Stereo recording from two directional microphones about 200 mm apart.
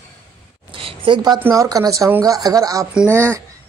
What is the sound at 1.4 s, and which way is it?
Speech, 15° right (ahead or behind).